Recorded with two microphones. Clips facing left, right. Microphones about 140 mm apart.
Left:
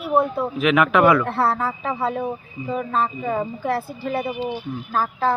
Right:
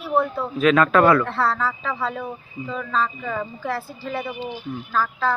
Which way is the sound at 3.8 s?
55° left (ahead or behind).